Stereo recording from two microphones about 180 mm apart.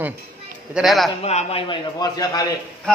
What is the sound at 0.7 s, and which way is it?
Speech, centre (ahead or behind).